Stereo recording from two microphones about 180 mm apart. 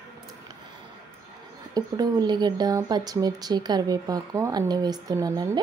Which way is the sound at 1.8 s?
20° right (ahead or behind).